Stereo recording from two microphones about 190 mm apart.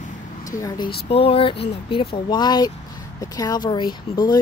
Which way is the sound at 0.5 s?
20° left (ahead or behind).